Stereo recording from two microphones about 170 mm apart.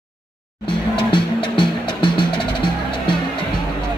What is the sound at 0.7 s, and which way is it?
Music, 30° left (ahead or behind).